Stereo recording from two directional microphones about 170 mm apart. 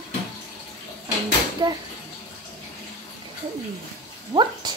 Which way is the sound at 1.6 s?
25° right (ahead or behind).